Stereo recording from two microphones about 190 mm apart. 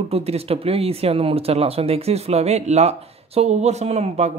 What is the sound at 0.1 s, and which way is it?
Speech, 30° right (ahead or behind).